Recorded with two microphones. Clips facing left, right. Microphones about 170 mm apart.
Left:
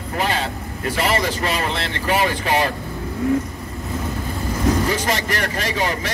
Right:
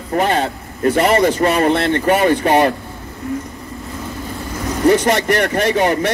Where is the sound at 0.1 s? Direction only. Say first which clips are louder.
Right 6 dB; 50° right (ahead or behind).